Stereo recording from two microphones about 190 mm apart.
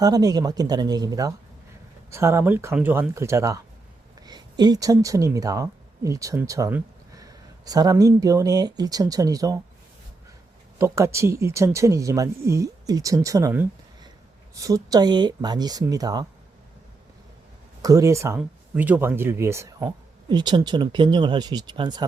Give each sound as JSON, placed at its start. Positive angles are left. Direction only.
{"t": 0.0, "sound": "a woman's voice", "side_deg": -20}
{"t": 10.8, "sound": "speech", "side_deg": -15}
{"t": 17.8, "sound": "speech", "side_deg": -15}